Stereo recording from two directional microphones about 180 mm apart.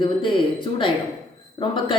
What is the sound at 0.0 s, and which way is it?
A woman's voice, 25° left (ahead or behind).